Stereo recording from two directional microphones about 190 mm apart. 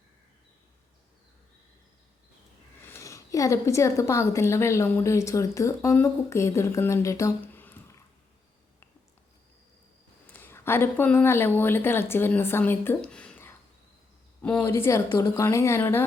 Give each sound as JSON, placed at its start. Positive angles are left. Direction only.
{"t": 2.8, "sound": "a woman's voice", "side_deg": 15}
{"t": 10.3, "sound": "speech", "side_deg": 10}